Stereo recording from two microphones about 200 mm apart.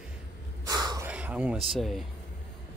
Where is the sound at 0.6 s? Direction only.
20° right (ahead or behind).